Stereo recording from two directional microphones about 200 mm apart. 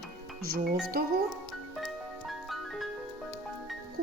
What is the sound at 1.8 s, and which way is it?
Music, centre (ahead or behind).